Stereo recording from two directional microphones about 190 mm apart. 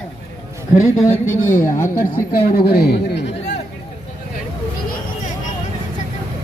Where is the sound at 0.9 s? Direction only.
15° left (ahead or behind).